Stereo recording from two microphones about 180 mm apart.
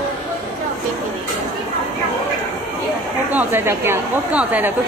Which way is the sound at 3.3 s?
10° right (ahead or behind).